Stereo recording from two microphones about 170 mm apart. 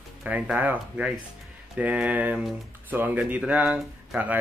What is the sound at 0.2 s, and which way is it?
Speech, 10° right (ahead or behind).